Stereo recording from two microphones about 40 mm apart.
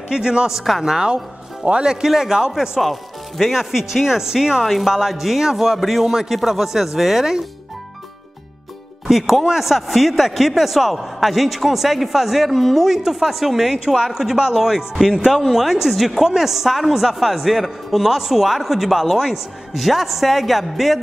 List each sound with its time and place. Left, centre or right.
0.1 s a man's voice: right
2.8 s a man's voice: centre
9.0 s a man's voice: centre